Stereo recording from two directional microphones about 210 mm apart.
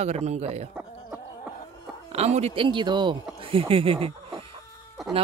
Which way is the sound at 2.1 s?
30° right (ahead or behind).